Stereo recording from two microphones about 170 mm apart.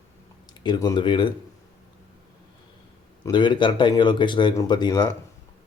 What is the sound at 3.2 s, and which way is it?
Speech, 25° left (ahead or behind).